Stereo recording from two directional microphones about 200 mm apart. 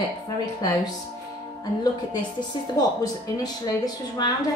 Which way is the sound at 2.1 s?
20° left (ahead or behind).